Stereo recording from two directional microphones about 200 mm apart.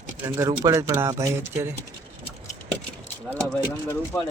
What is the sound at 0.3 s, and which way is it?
Speech, 15° right (ahead or behind).